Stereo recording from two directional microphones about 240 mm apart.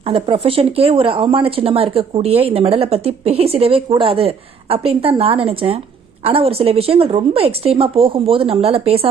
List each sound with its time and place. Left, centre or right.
0.0 s speech: right